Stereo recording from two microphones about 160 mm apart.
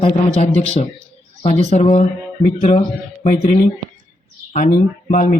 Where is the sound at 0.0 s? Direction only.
40° left (ahead or behind).